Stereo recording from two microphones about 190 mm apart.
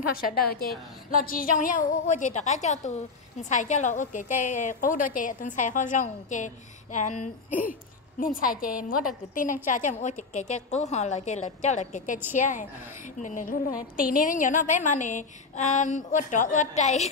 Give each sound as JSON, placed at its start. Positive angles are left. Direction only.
{"t": 0.1, "sound": "a woman's voice", "side_deg": 50}